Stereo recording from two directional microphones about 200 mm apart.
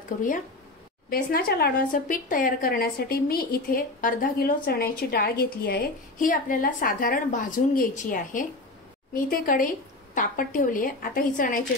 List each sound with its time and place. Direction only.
1.1 s a woman's voice: 50° left (ahead or behind)